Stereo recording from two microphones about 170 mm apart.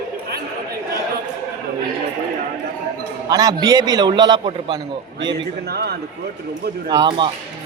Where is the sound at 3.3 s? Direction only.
20° right (ahead or behind).